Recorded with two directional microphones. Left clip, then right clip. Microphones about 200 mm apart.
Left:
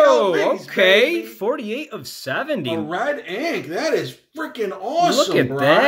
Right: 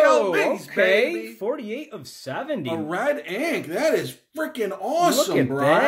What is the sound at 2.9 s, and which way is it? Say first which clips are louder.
Speech: right 2 dB; 40° right (ahead or behind).